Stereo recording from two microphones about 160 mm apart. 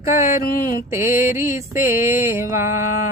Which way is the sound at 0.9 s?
20° right (ahead or behind).